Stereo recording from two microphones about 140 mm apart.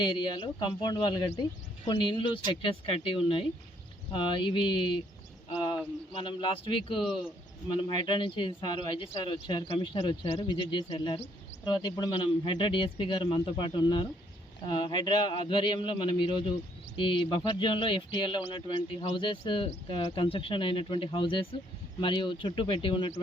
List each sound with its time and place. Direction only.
0.0 s speech: 30° left (ahead or behind)
6.1 s speech: 35° left (ahead or behind)